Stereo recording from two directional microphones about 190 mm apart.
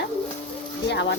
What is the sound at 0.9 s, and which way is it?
Speech, 65° left (ahead or behind).